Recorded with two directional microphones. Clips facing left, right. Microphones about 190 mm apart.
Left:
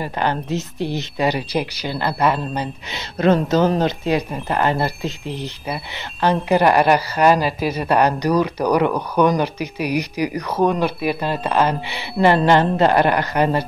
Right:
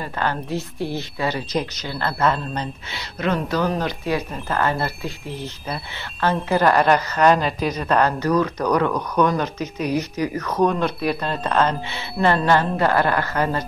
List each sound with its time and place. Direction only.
0.0 s speech: 20° left (ahead or behind)
3.4 s speech: 25° left (ahead or behind)